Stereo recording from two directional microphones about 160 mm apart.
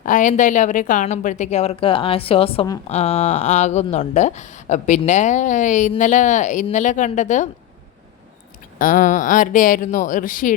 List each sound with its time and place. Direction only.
0.0 s a woman's voice: 55° left (ahead or behind)
8.8 s speech: 55° left (ahead or behind)